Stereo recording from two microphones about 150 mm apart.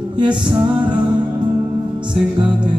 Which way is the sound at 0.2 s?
30° right (ahead or behind).